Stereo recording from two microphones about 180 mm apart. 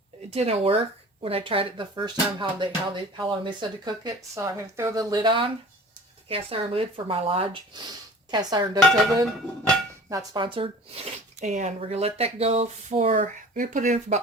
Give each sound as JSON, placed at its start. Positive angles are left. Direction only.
{"t": 0.3, "sound": "speech", "side_deg": -35}
{"t": 10.1, "sound": "speech", "side_deg": -20}